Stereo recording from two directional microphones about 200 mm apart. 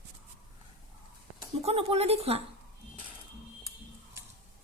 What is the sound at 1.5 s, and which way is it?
Speech, 30° right (ahead or behind).